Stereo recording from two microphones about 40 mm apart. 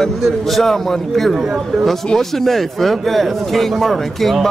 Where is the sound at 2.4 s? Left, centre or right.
Centre.